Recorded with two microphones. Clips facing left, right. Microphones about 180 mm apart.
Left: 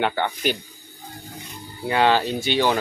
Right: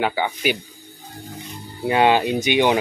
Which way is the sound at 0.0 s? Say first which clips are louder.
Right 1 dB; 10° right (ahead or behind).